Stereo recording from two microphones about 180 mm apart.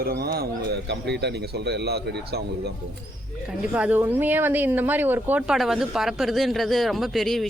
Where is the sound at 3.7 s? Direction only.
10° right (ahead or behind).